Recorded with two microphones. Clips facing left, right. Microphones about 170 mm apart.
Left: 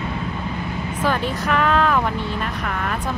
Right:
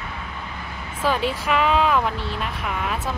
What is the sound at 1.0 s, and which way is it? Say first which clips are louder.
Speech: even; 5° right (ahead or behind).